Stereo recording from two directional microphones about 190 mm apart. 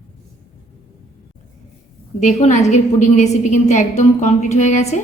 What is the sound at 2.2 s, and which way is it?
A woman's voice, 40° left (ahead or behind).